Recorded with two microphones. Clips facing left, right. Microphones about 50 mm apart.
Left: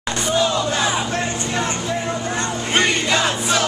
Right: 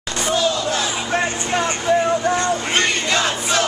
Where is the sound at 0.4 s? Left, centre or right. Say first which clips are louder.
Left 2 dB; centre.